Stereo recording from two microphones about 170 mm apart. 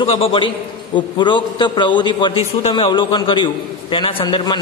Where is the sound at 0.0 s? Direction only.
30° left (ahead or behind).